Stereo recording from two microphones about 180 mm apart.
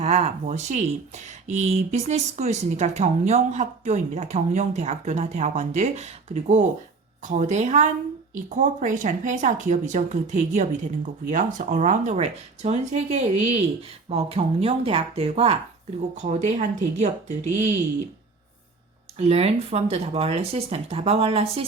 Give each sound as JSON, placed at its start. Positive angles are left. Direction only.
{"t": 0.0, "sound": "speech", "side_deg": -35}
{"t": 19.1, "sound": "speech", "side_deg": -35}